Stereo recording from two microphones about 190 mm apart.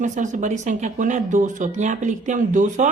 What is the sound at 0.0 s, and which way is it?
Speech, 40° right (ahead or behind).